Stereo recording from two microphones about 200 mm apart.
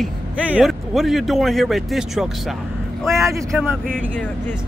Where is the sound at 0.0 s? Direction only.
Centre (ahead or behind).